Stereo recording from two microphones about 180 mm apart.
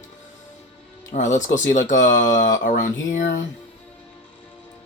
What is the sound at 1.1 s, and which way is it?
Speech, 40° left (ahead or behind).